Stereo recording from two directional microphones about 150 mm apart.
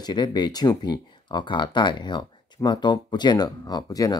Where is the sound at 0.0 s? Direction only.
30° left (ahead or behind).